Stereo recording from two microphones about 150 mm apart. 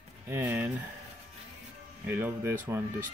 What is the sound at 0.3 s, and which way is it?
Speech, 15° right (ahead or behind).